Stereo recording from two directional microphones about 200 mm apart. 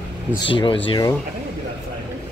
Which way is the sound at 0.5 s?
25° left (ahead or behind).